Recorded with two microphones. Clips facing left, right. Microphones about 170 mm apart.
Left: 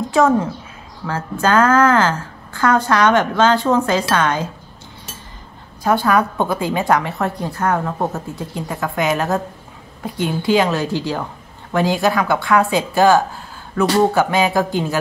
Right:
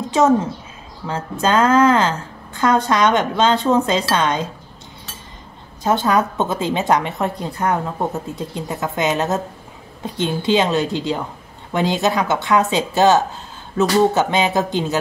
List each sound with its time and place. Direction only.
1.0 s a woman's voice: 20° right (ahead or behind)
5.9 s a woman's voice: 20° right (ahead or behind)